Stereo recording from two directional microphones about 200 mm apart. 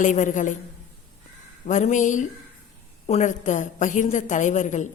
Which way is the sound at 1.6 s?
40° left (ahead or behind).